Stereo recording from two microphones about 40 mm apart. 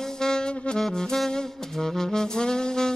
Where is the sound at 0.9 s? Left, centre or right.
Centre.